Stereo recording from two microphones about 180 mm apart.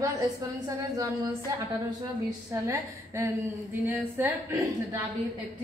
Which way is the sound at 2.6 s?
15° right (ahead or behind).